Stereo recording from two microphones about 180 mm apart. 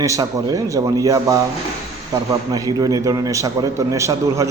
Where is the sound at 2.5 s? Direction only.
20° right (ahead or behind).